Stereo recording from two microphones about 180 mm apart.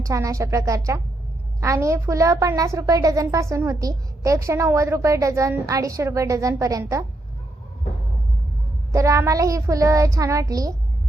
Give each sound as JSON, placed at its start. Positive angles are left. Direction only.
{"t": 0.0, "sound": "a woman's voice", "side_deg": -15}
{"t": 8.9, "sound": "a woman's voice", "side_deg": -15}